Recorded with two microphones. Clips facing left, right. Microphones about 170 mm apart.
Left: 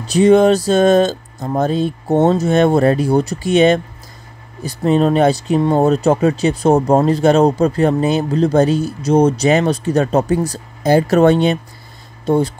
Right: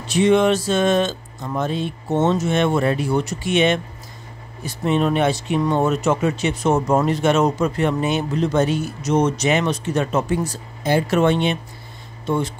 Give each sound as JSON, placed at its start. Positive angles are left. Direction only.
{"t": 0.0, "sound": "speech", "side_deg": 35}